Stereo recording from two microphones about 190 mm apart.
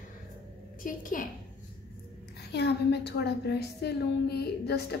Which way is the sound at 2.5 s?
60° left (ahead or behind).